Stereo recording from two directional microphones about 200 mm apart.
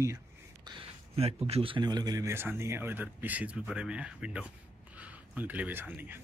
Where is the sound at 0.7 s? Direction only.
30° right (ahead or behind).